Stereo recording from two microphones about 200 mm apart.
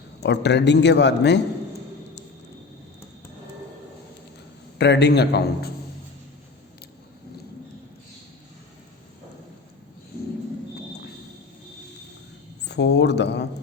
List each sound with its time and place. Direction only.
0.2 s speech: 60° left (ahead or behind)
4.8 s speech: 55° left (ahead or behind)
12.6 s speech: 55° left (ahead or behind)